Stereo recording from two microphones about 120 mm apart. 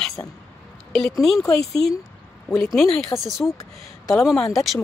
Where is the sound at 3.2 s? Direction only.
Centre (ahead or behind).